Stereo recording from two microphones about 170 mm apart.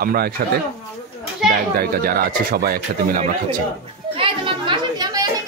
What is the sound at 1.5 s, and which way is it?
Speech, 60° right (ahead or behind).